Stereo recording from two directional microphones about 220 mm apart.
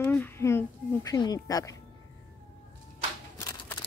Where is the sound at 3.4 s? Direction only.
15° left (ahead or behind).